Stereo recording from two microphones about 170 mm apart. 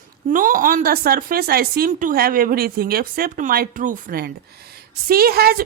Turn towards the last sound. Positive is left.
turn(degrees=-65)  # may be behind; listen again after turning